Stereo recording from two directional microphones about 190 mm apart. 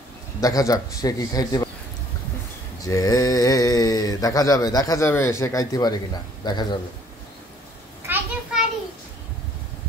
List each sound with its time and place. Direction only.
0.4 s speech: 20° left (ahead or behind)
2.8 s speech: 20° left (ahead or behind)
8.1 s children playing: 5° right (ahead or behind)